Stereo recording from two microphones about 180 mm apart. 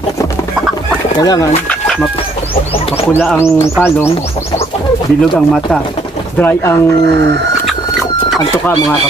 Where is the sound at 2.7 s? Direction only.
30° left (ahead or behind).